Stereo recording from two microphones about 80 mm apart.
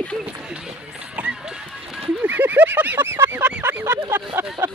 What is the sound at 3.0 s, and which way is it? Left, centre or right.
Fowl, right.